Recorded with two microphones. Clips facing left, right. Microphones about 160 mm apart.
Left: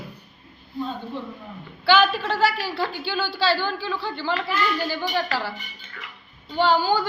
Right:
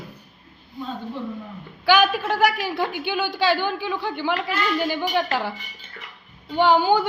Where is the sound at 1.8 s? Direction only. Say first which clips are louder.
Right 1 dB; 10° right (ahead or behind).